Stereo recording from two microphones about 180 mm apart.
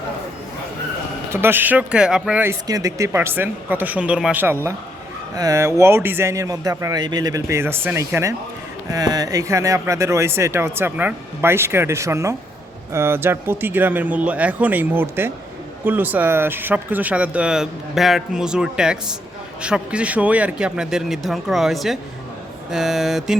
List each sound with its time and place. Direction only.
1.3 s speech: 10° right (ahead or behind)